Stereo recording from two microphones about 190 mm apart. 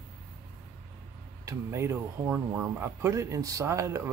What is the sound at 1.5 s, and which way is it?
Speech, 15° right (ahead or behind).